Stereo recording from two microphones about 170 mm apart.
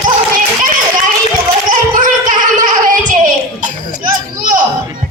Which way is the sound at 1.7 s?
50° right (ahead or behind).